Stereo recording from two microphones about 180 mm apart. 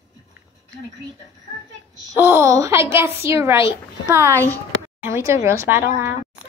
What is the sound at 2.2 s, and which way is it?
A woman's voice, 10° right (ahead or behind).